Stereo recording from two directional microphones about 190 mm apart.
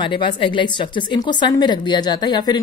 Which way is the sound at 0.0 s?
25° left (ahead or behind).